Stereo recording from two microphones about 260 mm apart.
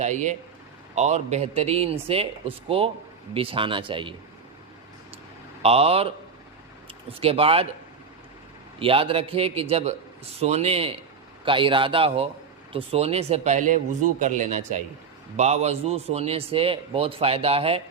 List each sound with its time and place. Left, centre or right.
0.0 s a man's voice: right
5.6 s a man's voice: right
8.8 s a man's voice: right